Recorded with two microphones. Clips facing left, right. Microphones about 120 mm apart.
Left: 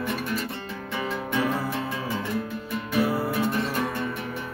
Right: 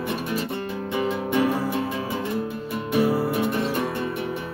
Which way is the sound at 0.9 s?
20° right (ahead or behind).